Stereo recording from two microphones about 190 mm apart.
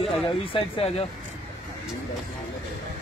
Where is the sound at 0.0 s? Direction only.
30° left (ahead or behind).